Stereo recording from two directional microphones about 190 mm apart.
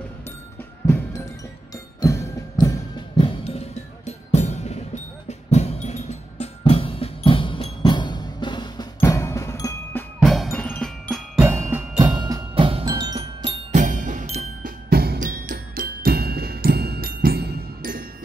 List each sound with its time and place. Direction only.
2.0 s music: 20° left (ahead or behind)
3.2 s music: 30° left (ahead or behind)
10.2 s glockenspiel: centre (ahead or behind)
11.3 s music: 15° right (ahead or behind)
12.0 s glockenspiel: 25° right (ahead or behind); by 14.7 s 40° right (ahead or behind)
14.9 s music: 55° right (ahead or behind)